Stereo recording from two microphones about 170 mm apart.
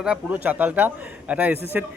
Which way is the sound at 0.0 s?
10° right (ahead or behind).